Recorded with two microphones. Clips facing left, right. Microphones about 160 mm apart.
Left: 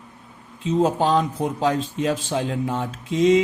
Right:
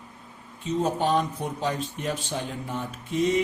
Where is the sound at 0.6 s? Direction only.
90° left.